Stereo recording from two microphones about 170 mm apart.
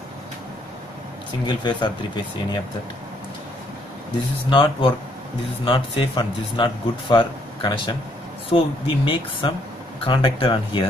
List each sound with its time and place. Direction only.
1.4 s a man's voice: 25° left (ahead or behind)
4.5 s a man's voice: 30° left (ahead or behind)